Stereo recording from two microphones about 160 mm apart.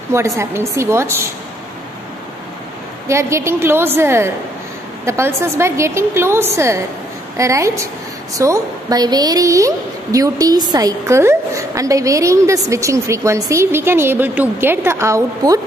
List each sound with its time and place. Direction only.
0.4 s a woman's voice: 15° right (ahead or behind)
3.1 s a woman's voice: 15° right (ahead or behind)